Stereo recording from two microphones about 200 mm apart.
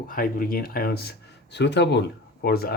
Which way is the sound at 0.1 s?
45° left (ahead or behind).